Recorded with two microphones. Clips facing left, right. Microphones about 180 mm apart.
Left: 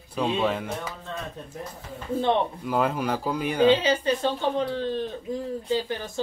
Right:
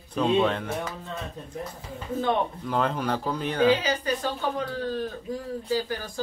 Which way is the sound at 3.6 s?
25° left (ahead or behind).